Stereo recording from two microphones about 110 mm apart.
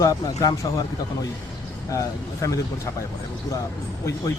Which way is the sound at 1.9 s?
30° left (ahead or behind).